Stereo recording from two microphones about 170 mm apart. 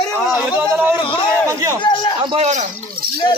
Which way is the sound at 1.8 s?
30° left (ahead or behind).